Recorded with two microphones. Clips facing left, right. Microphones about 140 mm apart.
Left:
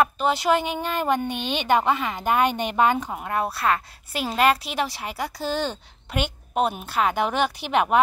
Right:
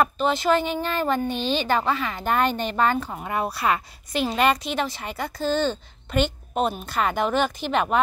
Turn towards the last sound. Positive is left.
turn(degrees=10)  # may be behind; listen again after turning